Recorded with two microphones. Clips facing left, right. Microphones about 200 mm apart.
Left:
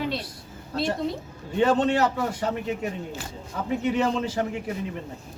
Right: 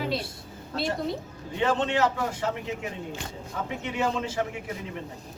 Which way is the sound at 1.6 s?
40° left (ahead or behind).